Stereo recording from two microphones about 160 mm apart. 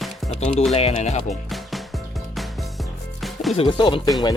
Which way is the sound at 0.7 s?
40° left (ahead or behind).